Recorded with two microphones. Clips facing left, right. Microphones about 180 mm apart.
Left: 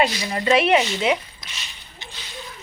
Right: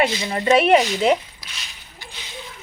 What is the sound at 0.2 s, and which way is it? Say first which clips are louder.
Speech: right 1 dB; 25° right (ahead or behind).